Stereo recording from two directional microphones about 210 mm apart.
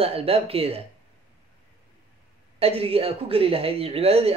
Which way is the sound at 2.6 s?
30° right (ahead or behind).